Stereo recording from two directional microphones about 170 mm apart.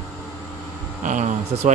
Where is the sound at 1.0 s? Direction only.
45° right (ahead or behind).